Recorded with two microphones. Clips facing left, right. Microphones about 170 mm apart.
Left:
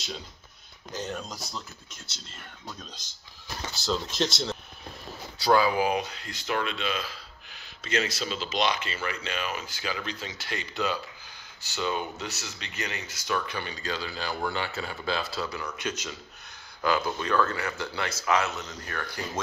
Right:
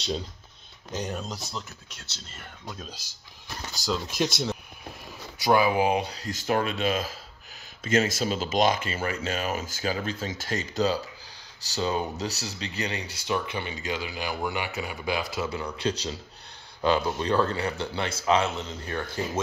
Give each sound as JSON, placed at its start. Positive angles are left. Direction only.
{"t": 0.9, "sound": "speech", "side_deg": -15}
{"t": 2.8, "sound": "speech", "side_deg": -10}